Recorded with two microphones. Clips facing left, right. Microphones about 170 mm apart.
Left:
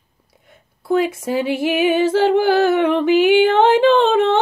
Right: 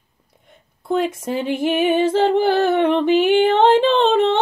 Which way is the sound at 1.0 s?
10° left (ahead or behind).